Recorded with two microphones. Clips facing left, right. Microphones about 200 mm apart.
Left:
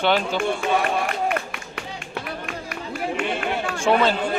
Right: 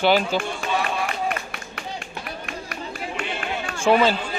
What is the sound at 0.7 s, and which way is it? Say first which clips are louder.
Run: left 3 dB; 50° left (ahead or behind).